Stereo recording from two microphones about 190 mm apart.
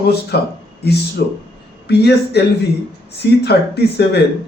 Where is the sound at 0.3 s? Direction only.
60° left (ahead or behind).